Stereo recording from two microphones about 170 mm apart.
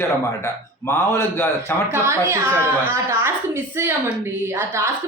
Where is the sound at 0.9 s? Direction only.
15° left (ahead or behind).